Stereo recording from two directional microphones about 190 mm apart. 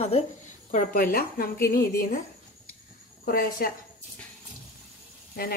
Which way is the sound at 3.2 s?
50° left (ahead or behind).